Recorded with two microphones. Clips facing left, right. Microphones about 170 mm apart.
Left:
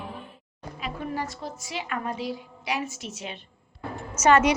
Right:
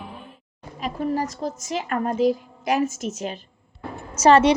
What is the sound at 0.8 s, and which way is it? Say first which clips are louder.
A woman's voice: right 7 dB; 40° right (ahead or behind).